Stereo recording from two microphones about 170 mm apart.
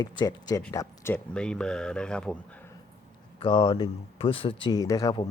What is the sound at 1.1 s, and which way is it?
Speech, 5° left (ahead or behind).